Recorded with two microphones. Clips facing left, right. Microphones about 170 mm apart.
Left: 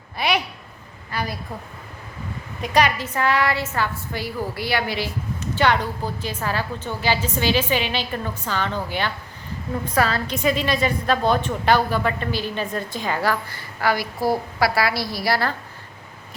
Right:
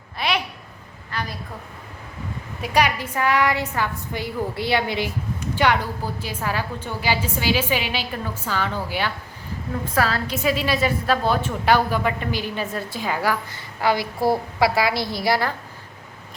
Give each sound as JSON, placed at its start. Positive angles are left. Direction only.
{"t": 1.1, "sound": "a woman's voice", "side_deg": 10}
{"t": 2.6, "sound": "a woman's voice", "side_deg": -10}
{"t": 13.5, "sound": "a woman's voice", "side_deg": -20}